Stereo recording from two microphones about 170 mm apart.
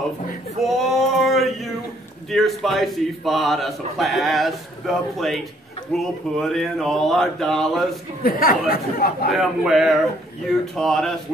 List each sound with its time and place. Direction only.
0.6 s male singing: centre (ahead or behind)
2.3 s a man's voice: centre (ahead or behind)
8.2 s speech: 60° left (ahead or behind)
9.3 s a man's voice: centre (ahead or behind)